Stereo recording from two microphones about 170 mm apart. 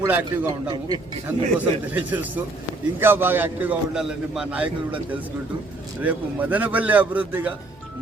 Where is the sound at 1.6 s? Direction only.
10° right (ahead or behind).